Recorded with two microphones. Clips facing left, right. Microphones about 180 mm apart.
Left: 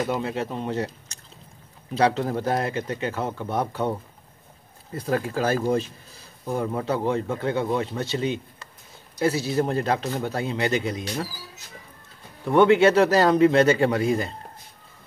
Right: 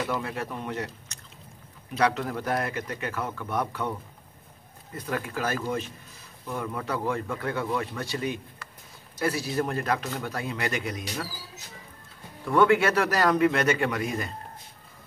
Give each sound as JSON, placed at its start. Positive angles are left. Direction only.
{"t": 0.1, "sound": "speech", "side_deg": 25}
{"t": 4.9, "sound": "speech", "side_deg": 30}
{"t": 12.4, "sound": "speech", "side_deg": 25}